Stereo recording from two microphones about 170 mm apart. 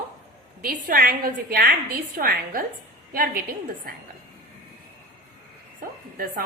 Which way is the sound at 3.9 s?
60° right (ahead or behind).